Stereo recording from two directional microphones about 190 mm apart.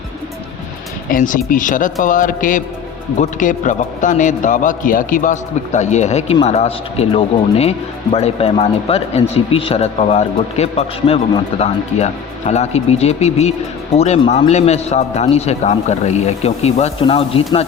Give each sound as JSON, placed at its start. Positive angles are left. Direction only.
{"t": 1.1, "sound": "a man's voice", "side_deg": 45}